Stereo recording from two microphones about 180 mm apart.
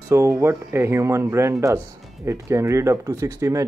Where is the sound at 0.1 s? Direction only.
15° right (ahead or behind).